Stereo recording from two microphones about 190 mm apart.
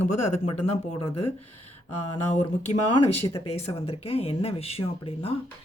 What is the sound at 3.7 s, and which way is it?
Speech, 30° left (ahead or behind).